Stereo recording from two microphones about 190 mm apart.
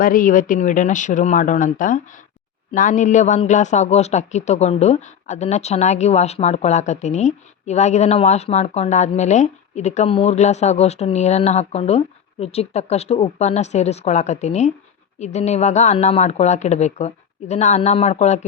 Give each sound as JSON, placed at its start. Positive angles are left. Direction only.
{"t": 0.0, "sound": "a man's voice", "side_deg": 45}